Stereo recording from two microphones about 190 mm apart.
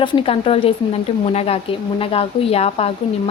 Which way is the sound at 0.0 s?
30° left (ahead or behind).